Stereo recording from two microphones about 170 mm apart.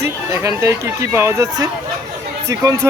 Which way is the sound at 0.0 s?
20° right (ahead or behind).